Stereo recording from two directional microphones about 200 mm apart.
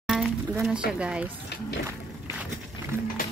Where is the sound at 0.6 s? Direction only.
5° right (ahead or behind).